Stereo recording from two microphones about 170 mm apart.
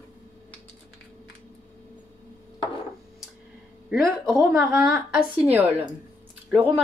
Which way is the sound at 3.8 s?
Centre (ahead or behind).